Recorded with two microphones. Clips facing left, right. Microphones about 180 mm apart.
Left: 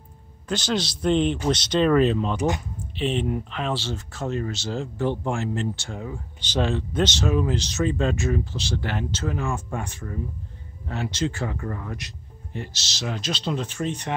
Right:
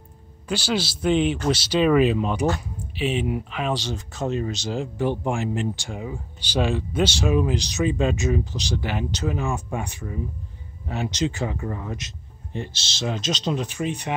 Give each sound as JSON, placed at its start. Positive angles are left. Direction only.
{"t": 0.5, "sound": "speech", "side_deg": -10}